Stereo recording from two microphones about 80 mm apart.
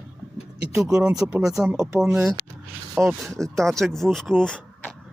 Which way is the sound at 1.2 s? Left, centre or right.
Right.